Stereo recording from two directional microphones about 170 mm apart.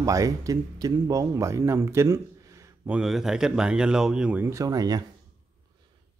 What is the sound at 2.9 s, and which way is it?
Speech, centre (ahead or behind).